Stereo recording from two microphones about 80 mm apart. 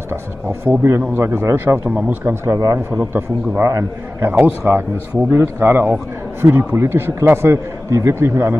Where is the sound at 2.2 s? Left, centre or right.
Right.